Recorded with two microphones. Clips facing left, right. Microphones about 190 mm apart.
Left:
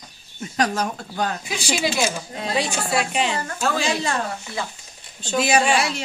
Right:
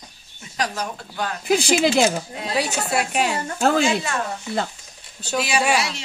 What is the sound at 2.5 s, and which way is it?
Speech, 5° right (ahead or behind).